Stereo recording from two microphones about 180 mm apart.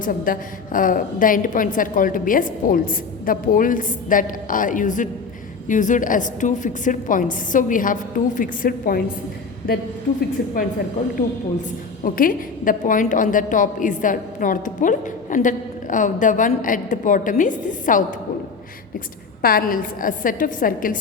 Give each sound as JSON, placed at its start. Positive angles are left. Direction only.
{"t": 0.0, "sound": "a woman's voice", "side_deg": 50}
{"t": 10.2, "sound": "a woman's voice", "side_deg": 50}
{"t": 12.0, "sound": "a woman's voice", "side_deg": 50}
{"t": 19.4, "sound": "a woman's voice", "side_deg": 55}